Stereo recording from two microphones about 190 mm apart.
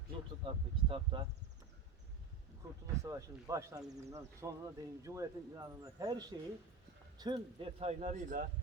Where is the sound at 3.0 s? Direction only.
15° right (ahead or behind); by 8.5 s 40° right (ahead or behind).